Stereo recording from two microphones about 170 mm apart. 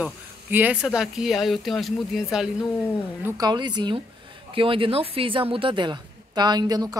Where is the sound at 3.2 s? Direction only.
20° right (ahead or behind).